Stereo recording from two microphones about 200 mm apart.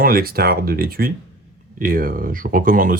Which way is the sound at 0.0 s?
45° right (ahead or behind).